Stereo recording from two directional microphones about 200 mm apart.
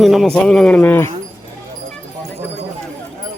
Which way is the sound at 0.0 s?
Centre (ahead or behind).